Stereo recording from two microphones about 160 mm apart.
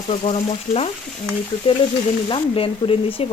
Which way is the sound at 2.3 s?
35° left (ahead or behind).